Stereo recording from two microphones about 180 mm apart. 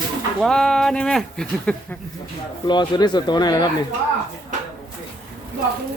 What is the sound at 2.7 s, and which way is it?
Speech, 25° left (ahead or behind).